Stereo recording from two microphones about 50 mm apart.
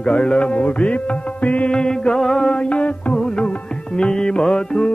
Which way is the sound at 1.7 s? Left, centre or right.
Centre.